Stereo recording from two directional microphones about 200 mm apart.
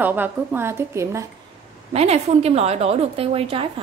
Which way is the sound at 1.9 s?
30° right (ahead or behind).